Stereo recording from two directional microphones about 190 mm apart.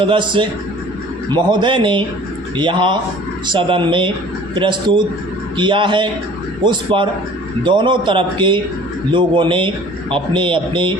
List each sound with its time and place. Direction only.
0.0 s speech: 25° right (ahead or behind)